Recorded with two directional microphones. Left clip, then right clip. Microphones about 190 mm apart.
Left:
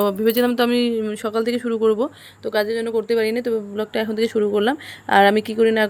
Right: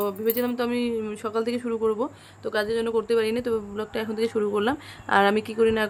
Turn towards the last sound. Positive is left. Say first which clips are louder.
# left 5 dB
turn(degrees=15)  # may be behind; listen again after turning